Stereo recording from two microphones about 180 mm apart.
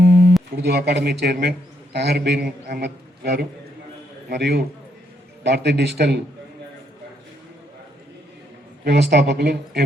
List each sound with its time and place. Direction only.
0.0 s music: 55° right (ahead or behind)
0.5 s a man's voice: 65° right (ahead or behind)
8.8 s a man's voice: 65° right (ahead or behind)